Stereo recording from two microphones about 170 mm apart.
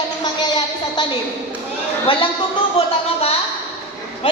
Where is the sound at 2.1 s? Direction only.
30° left (ahead or behind).